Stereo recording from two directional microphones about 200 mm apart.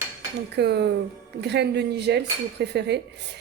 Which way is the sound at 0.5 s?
55° right (ahead or behind).